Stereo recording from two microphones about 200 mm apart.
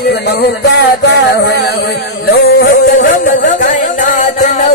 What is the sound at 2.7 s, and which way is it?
Music, 45° left (ahead or behind).